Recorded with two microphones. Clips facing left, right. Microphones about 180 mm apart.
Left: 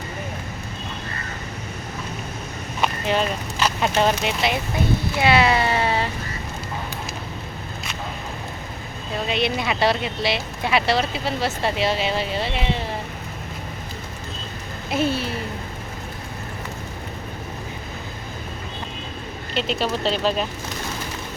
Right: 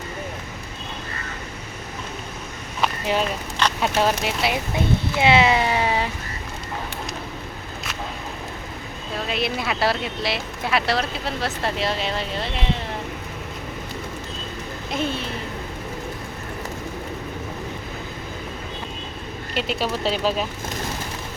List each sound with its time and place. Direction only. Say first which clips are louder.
2.8 s a sound: left 1 dB; 5° right (ahead or behind)
3.6 s speech: left 1 dB; centre (ahead or behind)
5.2 s speech: right 1 dB; 20° right (ahead or behind)
9.1 s speech: left 2 dB; centre (ahead or behind)
14.8 s speech: left 4 dB; 5° left (ahead or behind)
19.5 s speech: left 1 dB; 10° right (ahead or behind)